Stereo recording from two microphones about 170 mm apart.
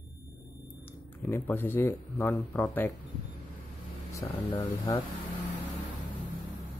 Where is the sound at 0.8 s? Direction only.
10° left (ahead or behind).